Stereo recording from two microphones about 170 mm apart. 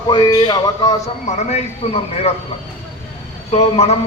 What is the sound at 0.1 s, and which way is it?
Speech, 20° left (ahead or behind).